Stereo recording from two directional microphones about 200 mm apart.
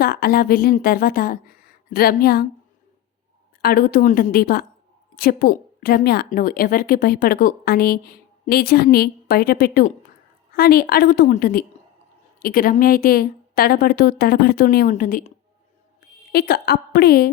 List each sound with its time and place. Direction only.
0.0 s a woman's voice: 50° left (ahead or behind)
3.6 s a woman's voice: 45° left (ahead or behind)
16.3 s a woman's voice: 50° left (ahead or behind)